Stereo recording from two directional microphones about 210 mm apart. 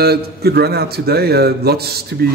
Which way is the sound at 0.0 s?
50° right (ahead or behind).